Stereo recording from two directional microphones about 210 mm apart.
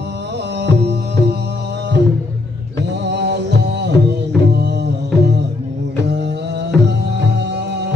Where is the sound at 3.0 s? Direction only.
55° right (ahead or behind).